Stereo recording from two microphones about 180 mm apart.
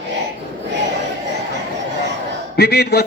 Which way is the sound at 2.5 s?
65° left (ahead or behind).